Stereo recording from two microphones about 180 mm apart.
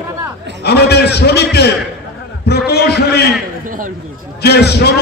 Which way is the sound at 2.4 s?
65° left (ahead or behind).